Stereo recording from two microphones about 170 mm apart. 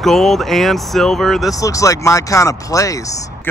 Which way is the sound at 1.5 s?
20° left (ahead or behind).